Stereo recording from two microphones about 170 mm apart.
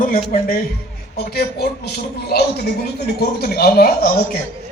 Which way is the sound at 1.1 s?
65° left (ahead or behind).